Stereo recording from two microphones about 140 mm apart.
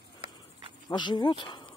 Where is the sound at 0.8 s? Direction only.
30° left (ahead or behind).